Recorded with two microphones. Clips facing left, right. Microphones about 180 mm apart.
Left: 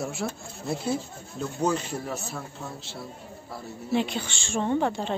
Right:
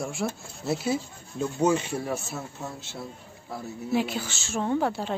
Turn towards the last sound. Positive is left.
turn(degrees=-5)  # may be behind; listen again after turning